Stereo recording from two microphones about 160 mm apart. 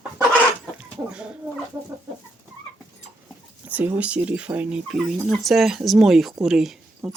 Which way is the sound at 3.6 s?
10° right (ahead or behind).